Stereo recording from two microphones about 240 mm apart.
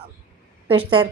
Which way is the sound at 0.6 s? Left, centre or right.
Right.